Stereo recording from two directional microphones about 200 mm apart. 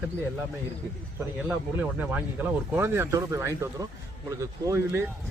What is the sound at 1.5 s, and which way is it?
Speech, 10° right (ahead or behind).